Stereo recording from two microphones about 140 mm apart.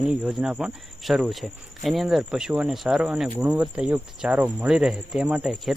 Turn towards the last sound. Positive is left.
turn(degrees=0)  # may be behind; listen again after turning